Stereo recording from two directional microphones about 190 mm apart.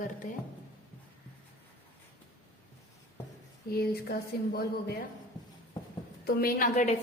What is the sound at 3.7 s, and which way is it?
Speech, 55° left (ahead or behind).